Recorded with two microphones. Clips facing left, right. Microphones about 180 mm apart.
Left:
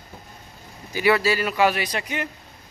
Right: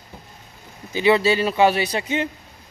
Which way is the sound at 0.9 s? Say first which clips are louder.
Right 3 dB; 25° right (ahead or behind).